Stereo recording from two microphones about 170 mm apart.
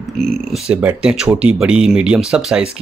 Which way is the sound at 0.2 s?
Centre (ahead or behind).